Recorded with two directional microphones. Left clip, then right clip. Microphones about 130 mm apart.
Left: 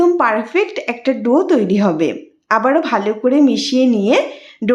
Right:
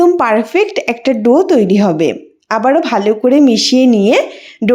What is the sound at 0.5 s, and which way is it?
A woman's voice, 35° right (ahead or behind).